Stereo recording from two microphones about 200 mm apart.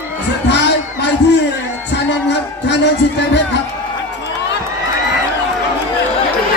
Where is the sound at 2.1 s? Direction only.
60° left (ahead or behind).